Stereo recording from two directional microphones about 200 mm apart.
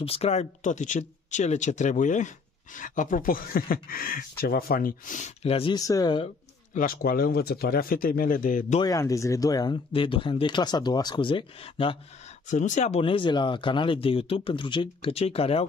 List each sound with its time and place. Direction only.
0.0 s speech: 30° left (ahead or behind)
6.7 s speech: 45° left (ahead or behind)
8.8 s speech: 15° left (ahead or behind)
12.4 s speech: 35° left (ahead or behind)